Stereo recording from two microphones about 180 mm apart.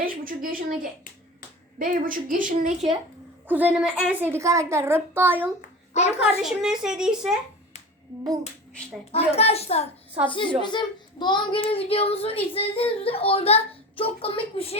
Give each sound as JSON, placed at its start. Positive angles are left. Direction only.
{"t": 0.0, "sound": "a woman's voice", "side_deg": -50}
{"t": 3.4, "sound": "a woman's voice", "side_deg": -10}
{"t": 5.9, "sound": "a child's voice", "side_deg": 40}
{"t": 6.4, "sound": "speech", "side_deg": -5}
{"t": 9.1, "sound": "a child's voice", "side_deg": 35}